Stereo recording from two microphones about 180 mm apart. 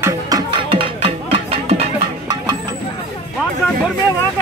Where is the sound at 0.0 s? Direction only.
20° right (ahead or behind).